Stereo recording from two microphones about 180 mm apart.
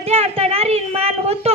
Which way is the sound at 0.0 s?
35° right (ahead or behind).